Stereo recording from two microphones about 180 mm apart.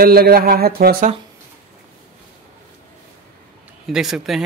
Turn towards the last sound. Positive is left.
turn(degrees=0)  # may be behind; listen again after turning